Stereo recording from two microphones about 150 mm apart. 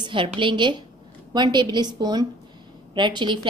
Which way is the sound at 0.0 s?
35° right (ahead or behind).